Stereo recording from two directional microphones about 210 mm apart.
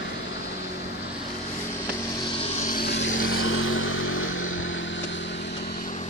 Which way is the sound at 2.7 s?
50° left (ahead or behind).